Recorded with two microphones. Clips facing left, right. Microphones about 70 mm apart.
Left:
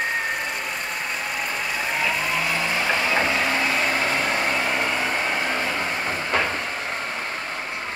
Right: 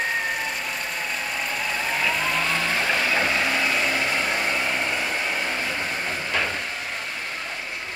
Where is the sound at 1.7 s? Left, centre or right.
Centre; by 5.3 s left.